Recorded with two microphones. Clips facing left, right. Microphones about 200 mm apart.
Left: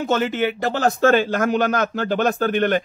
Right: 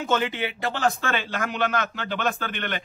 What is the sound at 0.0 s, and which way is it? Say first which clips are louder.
Speech: left 5 dB; 40° left (ahead or behind).